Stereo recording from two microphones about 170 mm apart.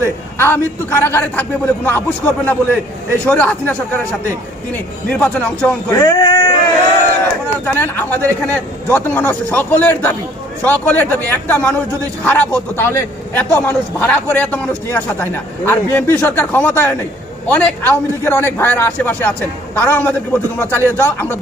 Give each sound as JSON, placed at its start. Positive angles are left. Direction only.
{"t": 0.0, "sound": "a man's voice", "side_deg": 15}
{"t": 5.9, "sound": "speech", "side_deg": 20}
{"t": 7.6, "sound": "a man's voice", "side_deg": 10}